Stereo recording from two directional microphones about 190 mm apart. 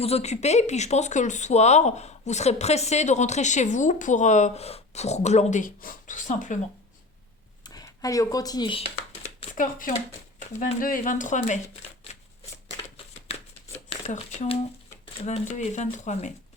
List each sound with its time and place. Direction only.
0.0 s speech: 35° left (ahead or behind)
7.6 s speech: 20° left (ahead or behind)
9.6 s speech: 45° left (ahead or behind)
14.1 s speech: 30° left (ahead or behind)